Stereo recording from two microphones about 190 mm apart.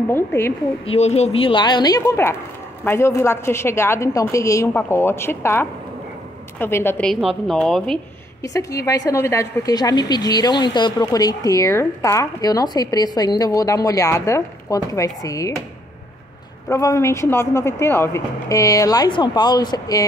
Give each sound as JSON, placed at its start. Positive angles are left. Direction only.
{"t": 0.1, "sound": "speech", "side_deg": 10}
{"t": 0.8, "sound": "a woman's voice", "side_deg": 35}
{"t": 8.4, "sound": "a woman's voice", "side_deg": 15}
{"t": 16.6, "sound": "speech", "side_deg": 15}